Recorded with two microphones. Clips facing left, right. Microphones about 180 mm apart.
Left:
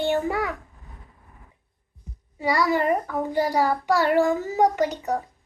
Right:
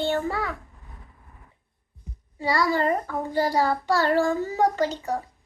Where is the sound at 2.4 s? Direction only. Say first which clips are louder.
Left 1 dB; 15° left (ahead or behind).